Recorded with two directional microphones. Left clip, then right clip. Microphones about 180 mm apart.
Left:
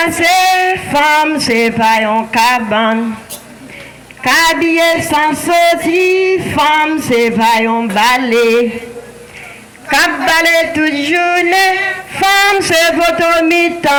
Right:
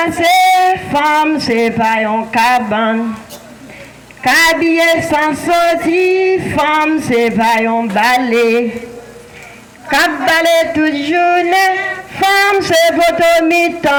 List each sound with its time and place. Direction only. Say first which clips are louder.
0.0 s music: even; 15° right (ahead or behind)
4.2 s speech: even; 30° right (ahead or behind)
9.9 s a man's voice: left 1 dB; 15° right (ahead or behind)